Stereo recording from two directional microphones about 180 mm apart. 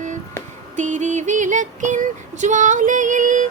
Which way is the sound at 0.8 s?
45° right (ahead or behind).